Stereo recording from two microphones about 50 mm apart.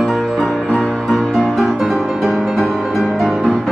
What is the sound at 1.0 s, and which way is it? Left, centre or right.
Music, centre.